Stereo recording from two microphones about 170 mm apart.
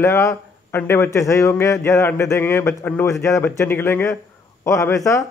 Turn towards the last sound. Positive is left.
turn(degrees=20)  # may be behind; listen again after turning